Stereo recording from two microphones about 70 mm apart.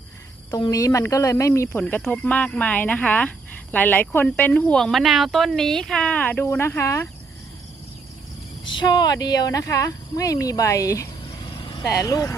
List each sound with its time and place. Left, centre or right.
0.6 s speech: left
2.1 s speech: centre
4.7 s speech: centre; by 6.4 s left
6.4 s speech: left
8.8 s speech: left